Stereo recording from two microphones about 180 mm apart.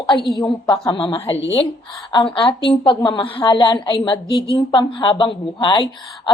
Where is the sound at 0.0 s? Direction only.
25° left (ahead or behind).